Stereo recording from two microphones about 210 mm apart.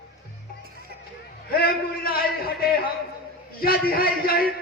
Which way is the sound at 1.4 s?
45° left (ahead or behind).